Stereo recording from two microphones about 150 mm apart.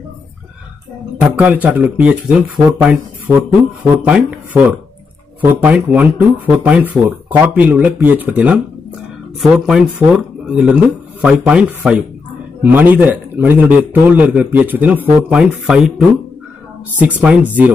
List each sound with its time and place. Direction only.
1.2 s speech: 10° right (ahead or behind)
16.9 s speech: 10° right (ahead or behind)